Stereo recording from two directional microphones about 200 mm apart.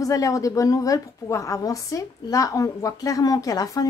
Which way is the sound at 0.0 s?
15° left (ahead or behind).